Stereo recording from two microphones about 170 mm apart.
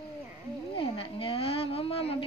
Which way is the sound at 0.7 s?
35° left (ahead or behind).